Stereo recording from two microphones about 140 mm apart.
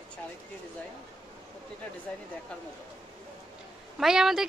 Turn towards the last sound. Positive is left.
turn(degrees=-5)  # may be behind; listen again after turning